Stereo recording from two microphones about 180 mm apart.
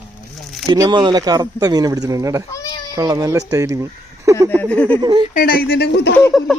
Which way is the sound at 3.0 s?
20° right (ahead or behind).